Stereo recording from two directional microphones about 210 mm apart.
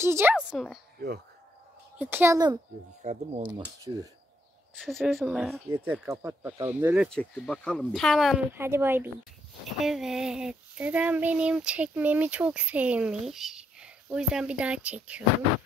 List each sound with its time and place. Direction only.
0.0 s speech: 10° right (ahead or behind)
0.9 s speech: 45° right (ahead or behind)
2.0 s speech: 10° right (ahead or behind)
3.0 s speech: 30° right (ahead or behind)
4.8 s speech: centre (ahead or behind)
5.7 s speech: 10° right (ahead or behind)
7.1 s speech: 5° left (ahead or behind)
8.5 s speech: 10° right (ahead or behind)